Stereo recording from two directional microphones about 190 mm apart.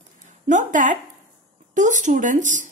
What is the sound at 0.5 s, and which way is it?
A woman's voice, 40° right (ahead or behind).